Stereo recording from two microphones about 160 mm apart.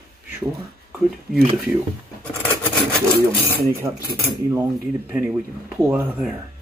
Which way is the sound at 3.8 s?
20° right (ahead or behind).